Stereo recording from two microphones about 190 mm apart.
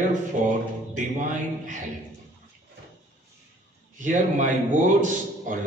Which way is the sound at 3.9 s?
40° right (ahead or behind).